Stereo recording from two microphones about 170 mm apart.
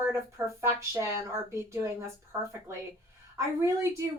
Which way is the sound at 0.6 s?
15° right (ahead or behind).